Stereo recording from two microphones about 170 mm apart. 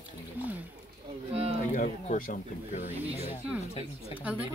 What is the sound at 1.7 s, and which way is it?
Speech, 50° left (ahead or behind).